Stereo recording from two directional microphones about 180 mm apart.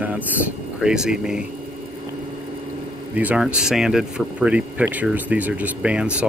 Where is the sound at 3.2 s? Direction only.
5° right (ahead or behind).